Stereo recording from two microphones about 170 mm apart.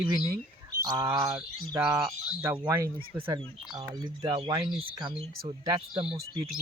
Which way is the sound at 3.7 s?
30° right (ahead or behind).